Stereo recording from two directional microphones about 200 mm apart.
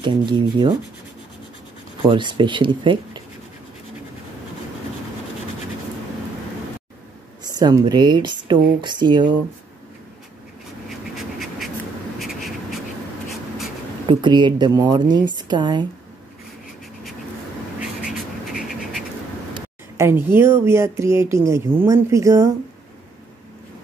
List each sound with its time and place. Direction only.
0.0 s a woman's voice: 20° right (ahead or behind)
2.0 s a woman's voice: 25° right (ahead or behind)
7.4 s a woman's voice: 20° right (ahead or behind)
10.9 s a sound: centre (ahead or behind)
12.2 s writing: centre (ahead or behind)
14.0 s a woman's voice: 25° right (ahead or behind)
17.7 s a sound: 5° right (ahead or behind)
20.0 s speech: 10° right (ahead or behind)